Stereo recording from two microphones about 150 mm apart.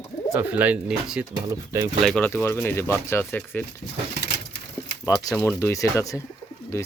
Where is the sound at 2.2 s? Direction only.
15° left (ahead or behind).